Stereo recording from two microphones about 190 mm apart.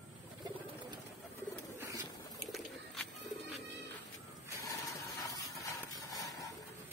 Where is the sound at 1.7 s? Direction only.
15° right (ahead or behind).